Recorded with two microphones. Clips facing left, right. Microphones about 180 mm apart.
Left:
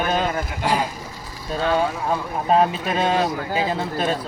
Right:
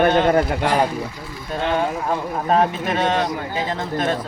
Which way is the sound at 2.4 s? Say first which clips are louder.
Left 1 dB; 15° left (ahead or behind).